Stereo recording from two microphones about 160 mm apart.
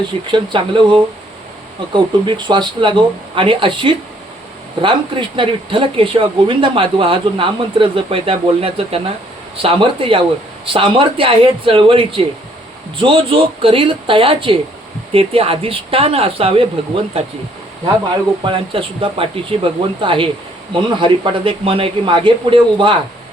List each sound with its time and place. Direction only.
0.3 s speech: 30° right (ahead or behind)
18.4 s speech: 35° right (ahead or behind)